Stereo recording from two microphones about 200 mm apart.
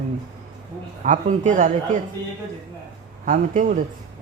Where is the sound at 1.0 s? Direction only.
40° right (ahead or behind).